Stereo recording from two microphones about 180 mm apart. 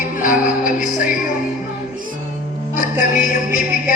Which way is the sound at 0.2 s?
50° left (ahead or behind).